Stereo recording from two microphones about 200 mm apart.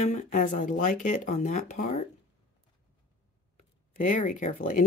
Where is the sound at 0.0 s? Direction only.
35° left (ahead or behind).